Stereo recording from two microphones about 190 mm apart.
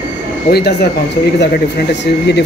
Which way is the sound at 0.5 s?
60° left (ahead or behind).